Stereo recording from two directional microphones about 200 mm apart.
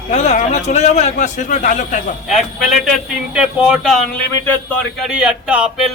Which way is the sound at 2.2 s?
Centre (ahead or behind).